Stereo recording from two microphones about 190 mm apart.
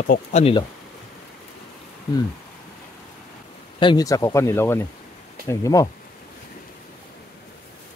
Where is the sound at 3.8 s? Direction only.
20° left (ahead or behind).